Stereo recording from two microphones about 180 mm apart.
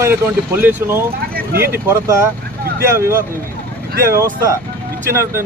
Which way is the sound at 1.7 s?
15° right (ahead or behind).